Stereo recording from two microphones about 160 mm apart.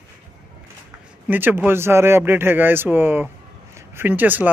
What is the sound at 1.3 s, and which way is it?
Speech, 10° right (ahead or behind).